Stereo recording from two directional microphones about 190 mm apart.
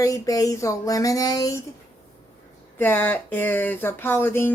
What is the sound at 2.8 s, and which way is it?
Speech, 10° left (ahead or behind).